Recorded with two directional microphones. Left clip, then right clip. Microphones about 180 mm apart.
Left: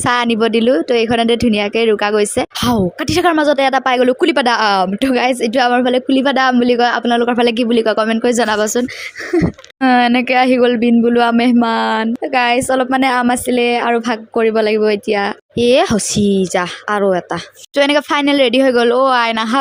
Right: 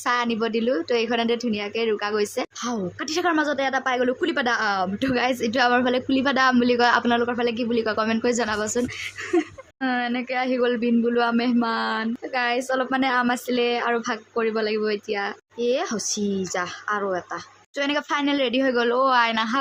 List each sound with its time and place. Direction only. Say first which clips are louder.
0.0 s speech: left 9 dB; 45° left (ahead or behind)
9.8 s speech: left 13 dB; 50° left (ahead or behind)